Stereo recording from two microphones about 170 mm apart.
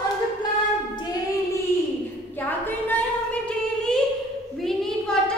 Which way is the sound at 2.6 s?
5° left (ahead or behind).